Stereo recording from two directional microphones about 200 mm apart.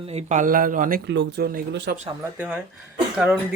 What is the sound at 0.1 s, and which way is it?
Speech, 35° right (ahead or behind).